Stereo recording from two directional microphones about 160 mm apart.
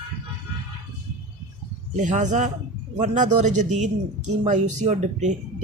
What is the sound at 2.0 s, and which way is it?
Speech, 50° right (ahead or behind).